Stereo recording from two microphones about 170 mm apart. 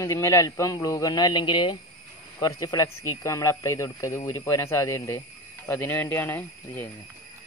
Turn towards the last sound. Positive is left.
turn(degrees=10)  # may be behind; listen again after turning